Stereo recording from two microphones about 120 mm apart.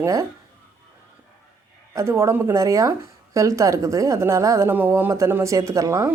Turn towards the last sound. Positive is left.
turn(degrees=-25)  # may be behind; listen again after turning